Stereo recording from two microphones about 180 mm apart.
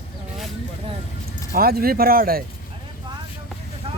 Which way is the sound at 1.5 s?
55° right (ahead or behind).